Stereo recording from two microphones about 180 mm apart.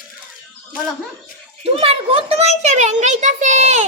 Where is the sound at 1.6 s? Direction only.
30° right (ahead or behind).